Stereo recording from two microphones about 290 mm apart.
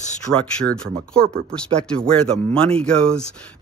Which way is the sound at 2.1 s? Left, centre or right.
Centre.